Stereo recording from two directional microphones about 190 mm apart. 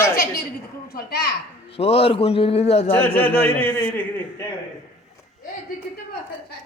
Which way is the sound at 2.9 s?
10° left (ahead or behind).